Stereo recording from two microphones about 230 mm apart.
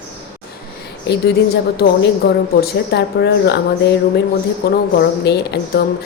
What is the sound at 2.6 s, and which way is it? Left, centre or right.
Speech, left.